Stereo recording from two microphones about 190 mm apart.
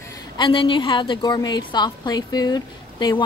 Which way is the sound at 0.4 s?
25° left (ahead or behind).